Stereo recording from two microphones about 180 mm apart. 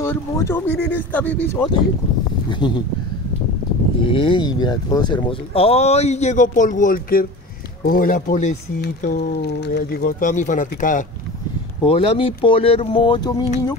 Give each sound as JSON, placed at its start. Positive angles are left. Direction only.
{"t": 0.0, "sound": "speech", "side_deg": 15}
{"t": 2.6, "sound": "speech", "side_deg": 25}
{"t": 4.0, "sound": "speech", "side_deg": 30}
{"t": 8.8, "sound": "speech", "side_deg": 60}
{"t": 11.8, "sound": "speech", "side_deg": 30}